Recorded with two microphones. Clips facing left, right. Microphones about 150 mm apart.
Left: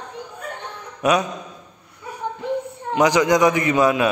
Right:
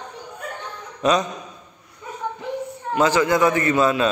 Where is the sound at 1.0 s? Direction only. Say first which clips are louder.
Left 1 dB; 10° left (ahead or behind).